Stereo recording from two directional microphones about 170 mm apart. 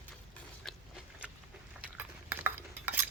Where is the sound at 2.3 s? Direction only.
10° right (ahead or behind).